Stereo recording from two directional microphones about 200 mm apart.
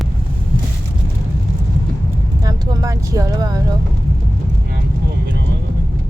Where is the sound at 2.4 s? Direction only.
15° right (ahead or behind).